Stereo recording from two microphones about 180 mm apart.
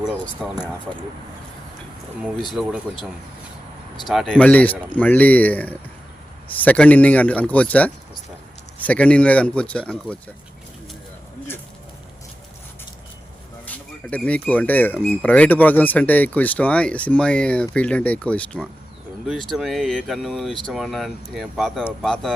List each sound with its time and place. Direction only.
0.4 s speech: centre (ahead or behind)
2.5 s speech: centre (ahead or behind)
4.1 s speech: centre (ahead or behind)
13.7 s speech: 5° left (ahead or behind)